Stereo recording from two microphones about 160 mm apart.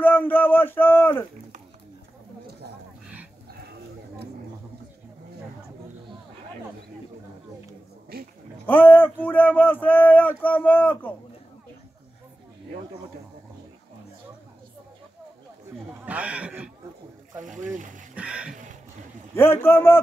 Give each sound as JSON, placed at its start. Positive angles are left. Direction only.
{"t": 0.0, "sound": "a sound", "side_deg": 10}
{"t": 8.1, "sound": "roaring cats", "side_deg": -70}
{"t": 8.6, "sound": "speech", "side_deg": 10}
{"t": 16.1, "sound": "speech", "side_deg": -10}
{"t": 17.4, "sound": "speech", "side_deg": -50}
{"t": 18.1, "sound": "speech", "side_deg": -5}
{"t": 18.5, "sound": "a sound", "side_deg": -55}
{"t": 19.3, "sound": "a man's voice", "side_deg": 15}